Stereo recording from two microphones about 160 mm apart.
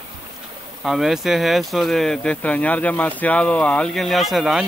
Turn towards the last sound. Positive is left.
turn(degrees=0)  # may be behind; listen again after turning